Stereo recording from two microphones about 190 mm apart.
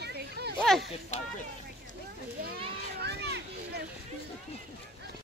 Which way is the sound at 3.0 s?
60° right (ahead or behind).